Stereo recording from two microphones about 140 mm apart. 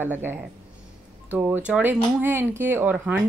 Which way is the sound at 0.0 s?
15° right (ahead or behind).